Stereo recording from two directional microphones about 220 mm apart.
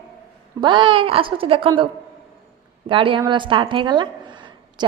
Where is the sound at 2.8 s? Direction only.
25° right (ahead or behind).